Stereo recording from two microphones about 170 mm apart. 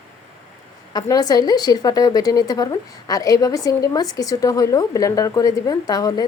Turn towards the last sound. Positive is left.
turn(degrees=20)  # may be behind; listen again after turning